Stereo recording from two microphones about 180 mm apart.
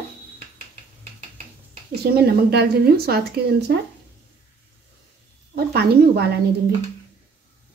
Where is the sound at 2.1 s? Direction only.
60° right (ahead or behind).